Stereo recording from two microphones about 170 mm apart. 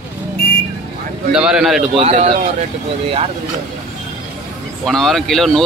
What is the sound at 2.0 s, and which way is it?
Speech, 40° right (ahead or behind).